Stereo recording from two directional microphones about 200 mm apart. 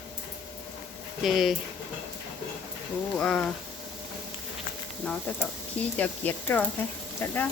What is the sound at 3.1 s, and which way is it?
Speech, 5° left (ahead or behind).